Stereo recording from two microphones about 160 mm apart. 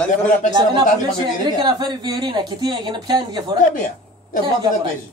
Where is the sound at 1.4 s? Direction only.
25° right (ahead or behind).